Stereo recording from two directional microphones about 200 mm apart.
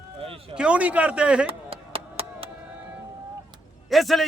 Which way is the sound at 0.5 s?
5° right (ahead or behind).